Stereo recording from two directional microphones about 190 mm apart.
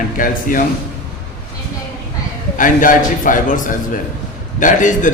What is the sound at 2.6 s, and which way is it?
A man's voice, 45° left (ahead or behind).